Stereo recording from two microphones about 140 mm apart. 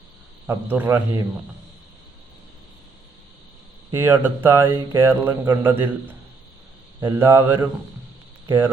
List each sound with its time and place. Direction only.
0.4 s speech: 15° right (ahead or behind)
3.9 s speech: 15° right (ahead or behind)